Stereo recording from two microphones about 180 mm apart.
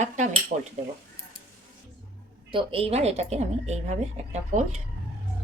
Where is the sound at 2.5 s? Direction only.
30° right (ahead or behind).